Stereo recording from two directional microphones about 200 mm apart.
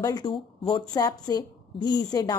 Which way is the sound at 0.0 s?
20° left (ahead or behind).